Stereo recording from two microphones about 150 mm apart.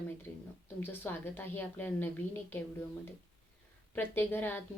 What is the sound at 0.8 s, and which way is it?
Speech, 15° left (ahead or behind).